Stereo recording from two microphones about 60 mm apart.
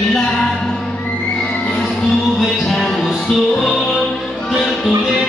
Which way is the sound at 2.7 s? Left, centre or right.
Centre.